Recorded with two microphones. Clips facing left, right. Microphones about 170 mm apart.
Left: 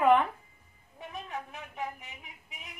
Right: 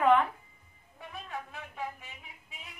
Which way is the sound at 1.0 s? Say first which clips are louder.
Left 2 dB; 20° left (ahead or behind).